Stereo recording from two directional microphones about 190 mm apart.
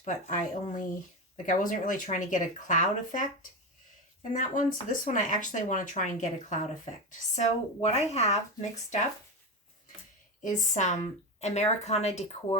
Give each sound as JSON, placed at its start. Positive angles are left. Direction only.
{"t": 0.0, "sound": "speech", "side_deg": 40}
{"t": 4.4, "sound": "speech", "side_deg": 45}
{"t": 10.4, "sound": "speech", "side_deg": 40}